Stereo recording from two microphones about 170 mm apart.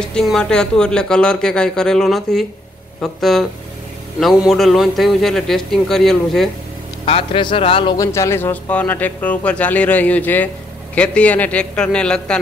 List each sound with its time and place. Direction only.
0.1 s speech: 5° left (ahead or behind)
4.5 s speech: centre (ahead or behind)
7.1 s speech: 30° left (ahead or behind)
8.0 s speech: 15° left (ahead or behind)